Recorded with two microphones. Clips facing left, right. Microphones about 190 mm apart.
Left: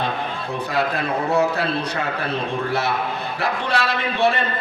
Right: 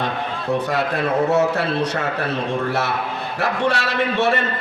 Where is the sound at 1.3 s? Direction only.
75° right (ahead or behind).